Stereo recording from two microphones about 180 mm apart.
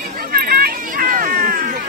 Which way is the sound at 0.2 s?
55° right (ahead or behind).